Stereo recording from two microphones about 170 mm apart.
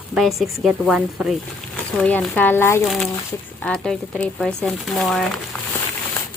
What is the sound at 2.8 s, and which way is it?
Speech, centre (ahead or behind).